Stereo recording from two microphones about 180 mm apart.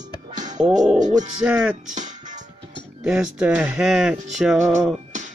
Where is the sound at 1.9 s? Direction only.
45° right (ahead or behind).